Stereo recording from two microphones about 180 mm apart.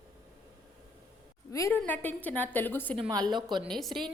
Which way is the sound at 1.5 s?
15° left (ahead or behind).